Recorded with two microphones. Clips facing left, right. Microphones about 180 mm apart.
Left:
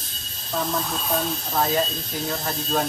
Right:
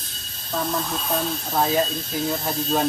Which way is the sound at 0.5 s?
Centre (ahead or behind).